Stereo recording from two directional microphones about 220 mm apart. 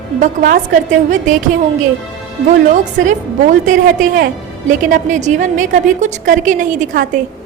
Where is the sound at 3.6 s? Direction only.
35° right (ahead or behind).